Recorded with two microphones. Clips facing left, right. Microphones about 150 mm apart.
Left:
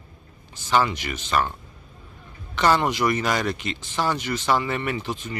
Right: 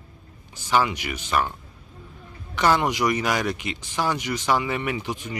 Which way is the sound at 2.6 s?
10° right (ahead or behind).